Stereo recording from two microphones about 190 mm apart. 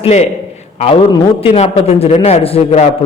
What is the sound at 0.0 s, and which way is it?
Speech, 35° left (ahead or behind).